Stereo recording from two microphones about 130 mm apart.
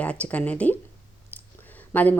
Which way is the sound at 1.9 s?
15° left (ahead or behind).